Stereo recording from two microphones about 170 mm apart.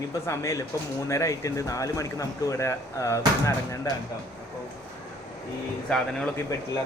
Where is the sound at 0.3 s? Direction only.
15° left (ahead or behind).